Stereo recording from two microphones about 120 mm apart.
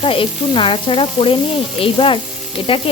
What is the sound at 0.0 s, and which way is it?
Frying, 45° left (ahead or behind).